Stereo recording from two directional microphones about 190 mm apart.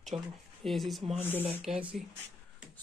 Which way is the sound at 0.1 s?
30° right (ahead or behind).